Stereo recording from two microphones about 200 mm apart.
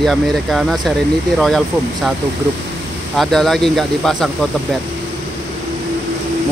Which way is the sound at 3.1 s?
Centre (ahead or behind).